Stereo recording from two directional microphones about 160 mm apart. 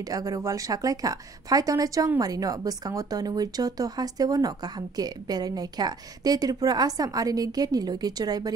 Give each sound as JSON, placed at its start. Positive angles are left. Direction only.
{"t": 0.1, "sound": "a woman's voice", "side_deg": -20}